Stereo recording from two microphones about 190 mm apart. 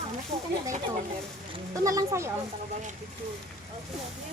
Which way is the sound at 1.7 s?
20° right (ahead or behind).